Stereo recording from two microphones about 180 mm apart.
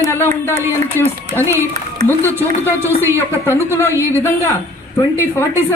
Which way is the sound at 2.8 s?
15° right (ahead or behind).